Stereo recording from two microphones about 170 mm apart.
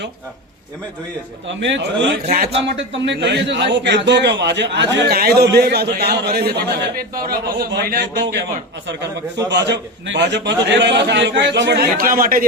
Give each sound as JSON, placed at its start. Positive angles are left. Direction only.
{"t": 1.5, "sound": "a man's voice", "side_deg": -90}
{"t": 2.2, "sound": "a man's voice", "side_deg": -55}
{"t": 2.7, "sound": "a man's voice", "side_deg": -90}
{"t": 4.9, "sound": "a man's voice", "side_deg": -65}
{"t": 9.5, "sound": "a man's voice", "side_deg": -90}